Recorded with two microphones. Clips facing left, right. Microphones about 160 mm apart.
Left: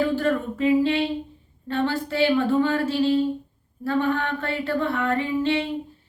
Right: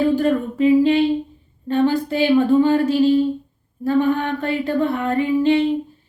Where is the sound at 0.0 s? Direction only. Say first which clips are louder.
Right 5 dB; 20° right (ahead or behind).